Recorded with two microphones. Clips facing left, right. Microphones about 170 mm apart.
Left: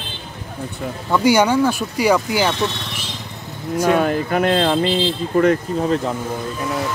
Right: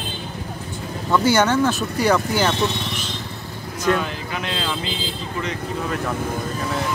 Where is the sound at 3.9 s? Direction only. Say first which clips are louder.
Left 7 dB; 50° left (ahead or behind).